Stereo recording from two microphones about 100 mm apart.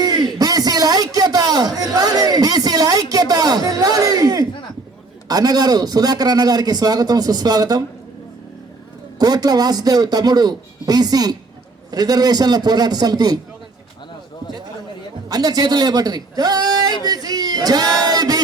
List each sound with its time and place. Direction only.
0.0 s a sound: 40° right (ahead or behind)
5.3 s a man's voice: 40° right (ahead or behind)
9.1 s a man's voice: 40° right (ahead or behind)
15.3 s a man's voice: 40° right (ahead or behind)
18.0 s chant: 40° right (ahead or behind)